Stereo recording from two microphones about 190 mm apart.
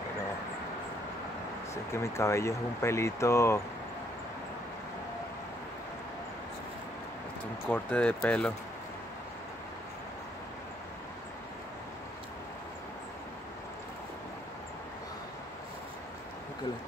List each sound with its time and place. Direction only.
1.7 s speech: 15° left (ahead or behind)
7.6 s speech: 10° left (ahead or behind)